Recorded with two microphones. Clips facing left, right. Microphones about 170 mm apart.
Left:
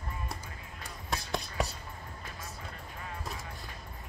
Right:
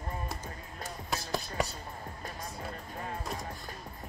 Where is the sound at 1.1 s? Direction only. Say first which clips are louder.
Even; centre (ahead or behind).